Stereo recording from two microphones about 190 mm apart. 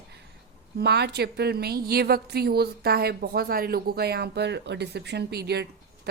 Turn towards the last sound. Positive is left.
turn(degrees=-60)  # may be behind; listen again after turning